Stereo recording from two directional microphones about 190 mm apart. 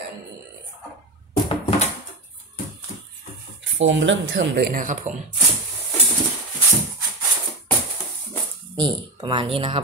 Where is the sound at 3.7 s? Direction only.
80° right.